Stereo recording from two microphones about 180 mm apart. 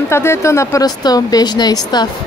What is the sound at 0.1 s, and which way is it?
Speech, 15° left (ahead or behind).